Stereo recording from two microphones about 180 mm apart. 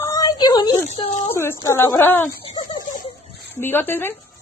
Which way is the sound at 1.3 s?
15° left (ahead or behind).